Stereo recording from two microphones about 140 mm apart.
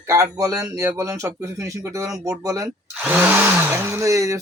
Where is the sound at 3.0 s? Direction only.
10° right (ahead or behind).